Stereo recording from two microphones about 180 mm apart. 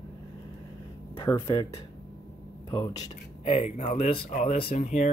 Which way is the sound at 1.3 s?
10° left (ahead or behind).